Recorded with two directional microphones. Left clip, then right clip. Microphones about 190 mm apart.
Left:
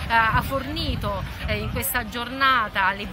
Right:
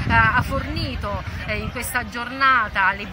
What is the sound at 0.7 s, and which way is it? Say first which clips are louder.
Speech: even; 55° left (ahead or behind).